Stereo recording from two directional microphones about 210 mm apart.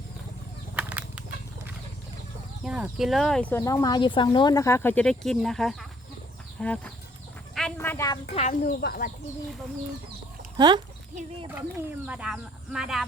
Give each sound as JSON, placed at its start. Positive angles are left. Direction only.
{"t": 0.8, "sound": "a sound", "side_deg": -5}
{"t": 2.6, "sound": "speech", "side_deg": -5}
{"t": 3.5, "sound": "speech", "side_deg": 15}
{"t": 8.4, "sound": "speech", "side_deg": 40}
{"t": 10.6, "sound": "speech", "side_deg": -20}
{"t": 12.0, "sound": "speech", "side_deg": -5}